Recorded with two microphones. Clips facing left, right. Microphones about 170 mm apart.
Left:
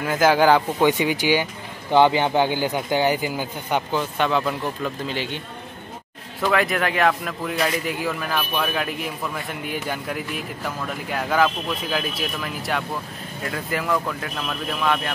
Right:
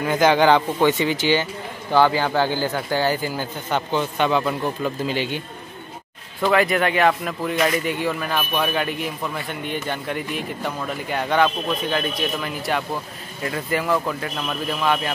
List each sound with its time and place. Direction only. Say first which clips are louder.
0.0 s speech: right 1 dB; 5° left (ahead or behind)
6.4 s a man's voice: right 3 dB; centre (ahead or behind)